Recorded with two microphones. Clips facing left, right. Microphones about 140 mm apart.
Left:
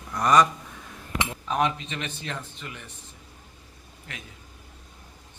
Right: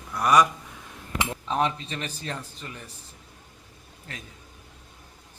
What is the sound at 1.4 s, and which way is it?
Speech, 30° right (ahead or behind).